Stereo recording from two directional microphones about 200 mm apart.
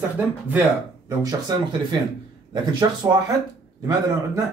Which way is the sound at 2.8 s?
20° right (ahead or behind).